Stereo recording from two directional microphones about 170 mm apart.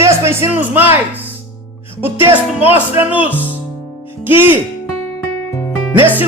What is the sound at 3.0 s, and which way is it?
Speech, 10° right (ahead or behind).